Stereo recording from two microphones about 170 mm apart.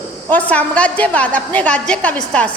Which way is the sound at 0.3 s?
10° left (ahead or behind).